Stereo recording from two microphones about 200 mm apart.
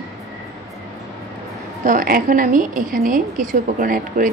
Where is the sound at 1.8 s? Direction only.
45° right (ahead or behind).